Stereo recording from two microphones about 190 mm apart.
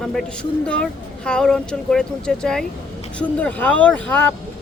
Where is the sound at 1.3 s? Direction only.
5° left (ahead or behind).